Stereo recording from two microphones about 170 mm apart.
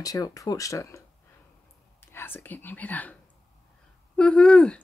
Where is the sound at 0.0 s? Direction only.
20° left (ahead or behind).